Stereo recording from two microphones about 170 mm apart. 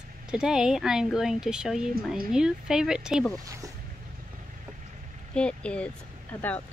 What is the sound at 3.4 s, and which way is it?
Speech, 20° right (ahead or behind).